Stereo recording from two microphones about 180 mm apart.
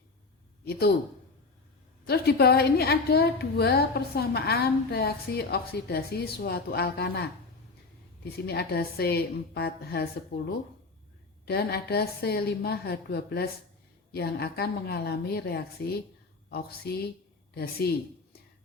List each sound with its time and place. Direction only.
0.6 s speech: 60° left (ahead or behind)
2.0 s a woman's voice: 60° left (ahead or behind)